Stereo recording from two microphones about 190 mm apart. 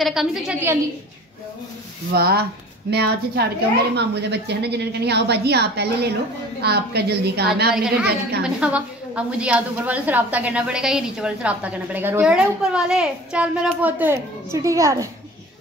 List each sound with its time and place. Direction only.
0.0 s a woman's voice: centre (ahead or behind)
2.1 s a woman's voice: 55° right (ahead or behind)
7.7 s a woman's voice: 5° right (ahead or behind)